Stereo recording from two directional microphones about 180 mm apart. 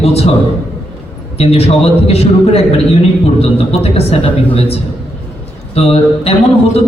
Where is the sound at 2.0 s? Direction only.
35° left (ahead or behind).